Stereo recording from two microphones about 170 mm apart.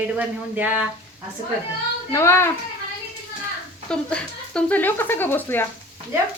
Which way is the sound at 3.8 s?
5° left (ahead or behind).